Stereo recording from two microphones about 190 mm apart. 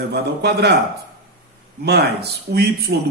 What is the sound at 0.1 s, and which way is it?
Speech, 60° right (ahead or behind).